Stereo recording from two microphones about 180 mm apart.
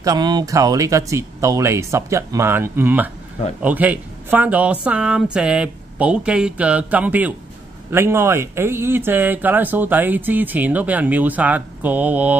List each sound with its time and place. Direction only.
0.0 s speech: 20° right (ahead or behind)